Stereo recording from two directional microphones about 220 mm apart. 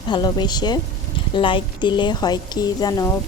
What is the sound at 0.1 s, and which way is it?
A woman's voice, 20° left (ahead or behind).